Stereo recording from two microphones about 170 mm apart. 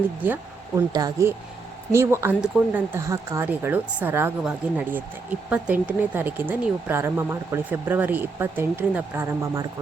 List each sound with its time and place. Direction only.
0.8 s speech: 20° right (ahead or behind)